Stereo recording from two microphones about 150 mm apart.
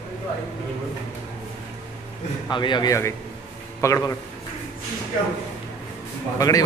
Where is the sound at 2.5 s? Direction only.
30° left (ahead or behind).